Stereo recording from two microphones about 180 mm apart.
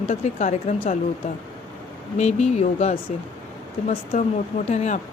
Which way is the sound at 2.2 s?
40° left (ahead or behind).